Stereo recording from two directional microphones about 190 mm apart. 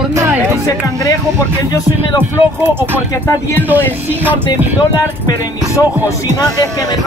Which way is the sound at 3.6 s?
10° right (ahead or behind).